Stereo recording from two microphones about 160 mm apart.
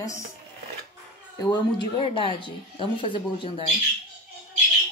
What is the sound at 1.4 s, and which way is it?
Speech, 30° left (ahead or behind).